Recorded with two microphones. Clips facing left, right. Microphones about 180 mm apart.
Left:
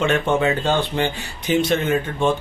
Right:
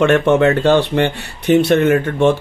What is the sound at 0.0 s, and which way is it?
Speech, 70° right (ahead or behind).